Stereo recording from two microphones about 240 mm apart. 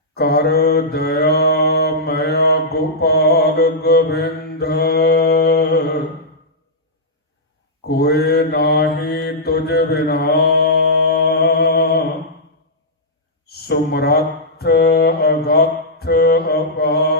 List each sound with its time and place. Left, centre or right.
0.1 s mantra: left
7.9 s mantra: left
13.4 s a sound: left
14.6 s mantra: left